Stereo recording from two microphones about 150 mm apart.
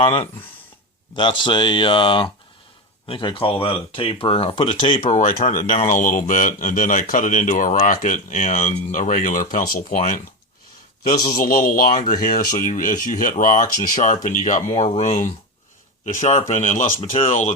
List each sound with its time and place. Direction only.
0.0 s speech: 40° left (ahead or behind)
5.0 s speech: 60° left (ahead or behind)
11.2 s a man's voice: 75° left (ahead or behind); by 17.0 s 55° left (ahead or behind)
17.0 s speech: 45° left (ahead or behind)